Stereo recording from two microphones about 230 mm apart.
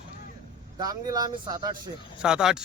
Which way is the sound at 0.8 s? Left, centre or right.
Centre.